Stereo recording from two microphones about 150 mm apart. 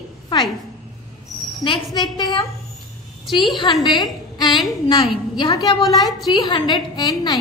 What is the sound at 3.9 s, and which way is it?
A woman's voice, 25° left (ahead or behind).